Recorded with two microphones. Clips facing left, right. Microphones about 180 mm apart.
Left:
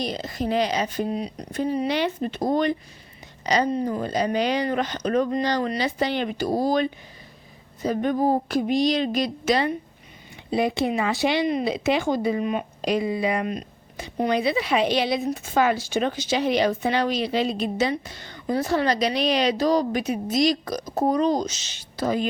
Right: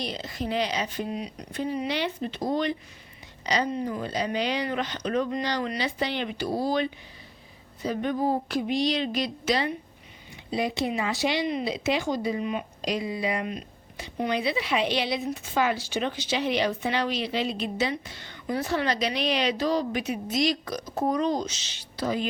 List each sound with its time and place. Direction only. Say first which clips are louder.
0.0 s speech: left 5 dB; 45° left (ahead or behind)